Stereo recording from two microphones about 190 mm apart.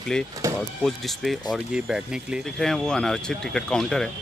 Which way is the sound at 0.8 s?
Centre (ahead or behind).